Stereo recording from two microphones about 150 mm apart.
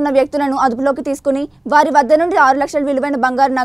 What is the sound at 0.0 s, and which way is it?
A woman's voice, centre (ahead or behind).